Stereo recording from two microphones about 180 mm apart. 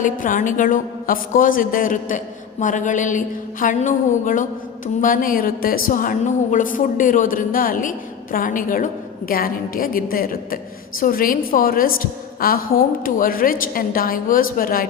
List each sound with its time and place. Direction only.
0.0 s a woman's voice: 45° left (ahead or behind)